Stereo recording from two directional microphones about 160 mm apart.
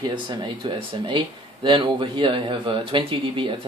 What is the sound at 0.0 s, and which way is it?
Speech, 30° right (ahead or behind).